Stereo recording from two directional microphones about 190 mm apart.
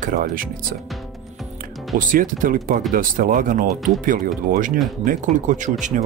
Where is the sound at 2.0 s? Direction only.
45° right (ahead or behind).